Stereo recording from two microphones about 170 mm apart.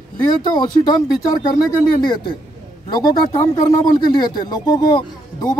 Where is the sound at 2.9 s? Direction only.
25° left (ahead or behind).